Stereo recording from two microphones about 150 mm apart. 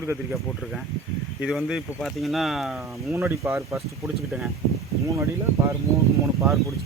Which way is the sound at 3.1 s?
15° right (ahead or behind).